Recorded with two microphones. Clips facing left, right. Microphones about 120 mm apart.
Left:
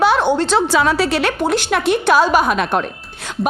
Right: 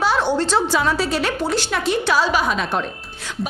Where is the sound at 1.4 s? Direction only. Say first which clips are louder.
Left 4 dB; 55° left (ahead or behind).